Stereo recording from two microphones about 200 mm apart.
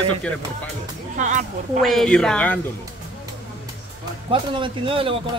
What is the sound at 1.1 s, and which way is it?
Speech, 40° right (ahead or behind).